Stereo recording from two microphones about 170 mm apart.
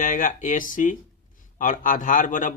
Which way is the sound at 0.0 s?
50° left (ahead or behind).